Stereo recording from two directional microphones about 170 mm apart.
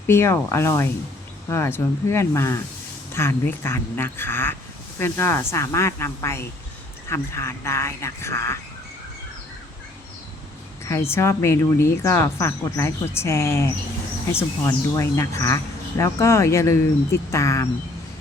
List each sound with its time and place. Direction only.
0.1 s speech: 15° left (ahead or behind)
10.8 s speech: 15° left (ahead or behind)
14.7 s speech: 15° left (ahead or behind)